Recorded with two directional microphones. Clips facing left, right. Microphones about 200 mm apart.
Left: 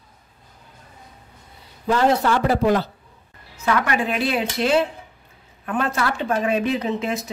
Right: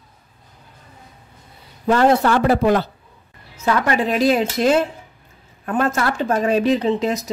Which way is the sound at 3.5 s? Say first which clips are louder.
Right 2 dB; 35° right (ahead or behind).